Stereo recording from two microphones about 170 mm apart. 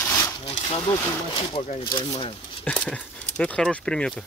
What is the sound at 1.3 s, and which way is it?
Speech, 30° left (ahead or behind).